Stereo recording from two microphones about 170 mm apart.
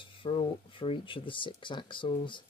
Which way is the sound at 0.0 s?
30° left (ahead or behind).